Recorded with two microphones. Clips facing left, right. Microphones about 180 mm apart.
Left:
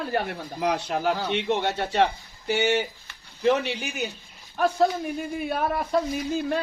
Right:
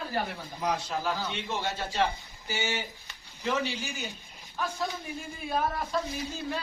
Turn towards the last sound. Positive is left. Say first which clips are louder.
# left 8 dB
turn(degrees=60)  # may be behind; listen again after turning